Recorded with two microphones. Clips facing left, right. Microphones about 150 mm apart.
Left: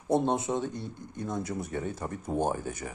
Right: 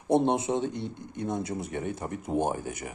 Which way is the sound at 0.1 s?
20° right (ahead or behind).